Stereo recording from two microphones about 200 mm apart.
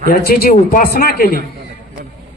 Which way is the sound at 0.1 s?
50° left (ahead or behind).